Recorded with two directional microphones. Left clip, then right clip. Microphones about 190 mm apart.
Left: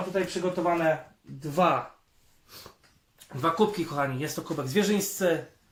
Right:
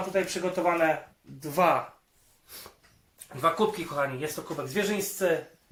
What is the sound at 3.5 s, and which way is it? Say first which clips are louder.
Speech: left 1 dB; 30° left (ahead or behind).